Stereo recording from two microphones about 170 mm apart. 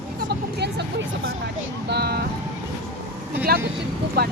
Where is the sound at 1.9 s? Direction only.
70° right (ahead or behind).